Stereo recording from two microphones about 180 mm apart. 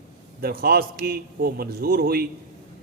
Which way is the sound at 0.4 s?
60° right (ahead or behind).